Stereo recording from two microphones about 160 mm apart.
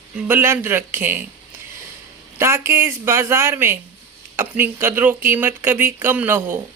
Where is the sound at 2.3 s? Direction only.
15° right (ahead or behind).